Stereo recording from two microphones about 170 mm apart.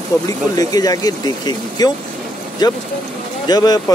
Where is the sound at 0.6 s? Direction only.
20° left (ahead or behind).